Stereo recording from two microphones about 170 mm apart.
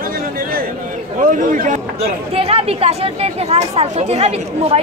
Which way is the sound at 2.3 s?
35° right (ahead or behind).